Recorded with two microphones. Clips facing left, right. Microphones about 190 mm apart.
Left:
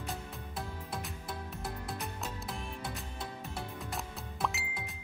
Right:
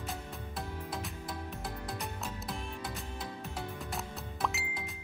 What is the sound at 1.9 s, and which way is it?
Music, centre (ahead or behind).